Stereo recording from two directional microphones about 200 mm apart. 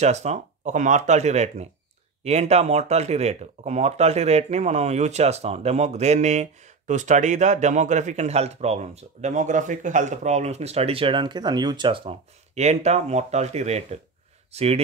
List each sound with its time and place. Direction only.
0.0 s speech: 35° right (ahead or behind)